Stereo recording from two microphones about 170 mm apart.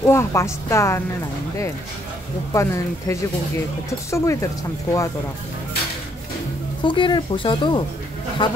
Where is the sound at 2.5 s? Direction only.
15° left (ahead or behind).